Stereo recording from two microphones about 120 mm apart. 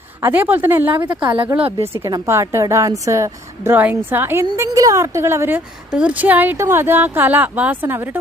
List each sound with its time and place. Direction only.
0.2 s a woman's voice: 15° right (ahead or behind)
2.0 s a woman's voice: 25° right (ahead or behind)